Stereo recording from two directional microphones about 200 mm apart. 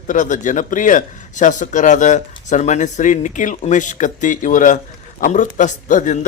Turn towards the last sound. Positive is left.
turn(degrees=40)  # may be behind; listen again after turning